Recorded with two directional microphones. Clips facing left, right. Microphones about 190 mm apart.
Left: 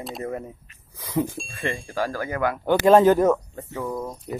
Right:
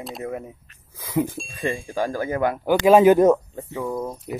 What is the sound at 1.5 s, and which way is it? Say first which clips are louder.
Speech: right 2 dB; 15° right (ahead or behind).